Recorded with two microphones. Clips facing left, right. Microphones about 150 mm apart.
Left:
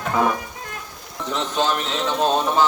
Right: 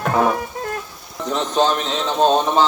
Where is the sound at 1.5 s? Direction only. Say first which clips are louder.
Right 4 dB; 30° right (ahead or behind).